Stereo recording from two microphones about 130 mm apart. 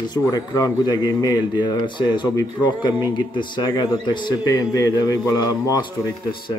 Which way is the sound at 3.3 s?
35° left (ahead or behind).